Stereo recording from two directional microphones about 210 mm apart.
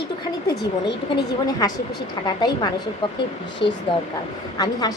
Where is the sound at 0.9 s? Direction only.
20° left (ahead or behind).